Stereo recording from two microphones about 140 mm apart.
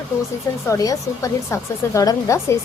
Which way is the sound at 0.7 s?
25° left (ahead or behind).